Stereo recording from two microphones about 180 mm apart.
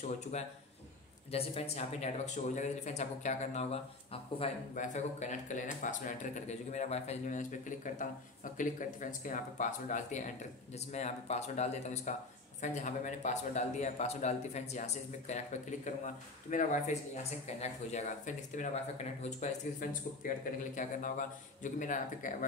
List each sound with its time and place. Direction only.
0.0 s speech: 40° left (ahead or behind)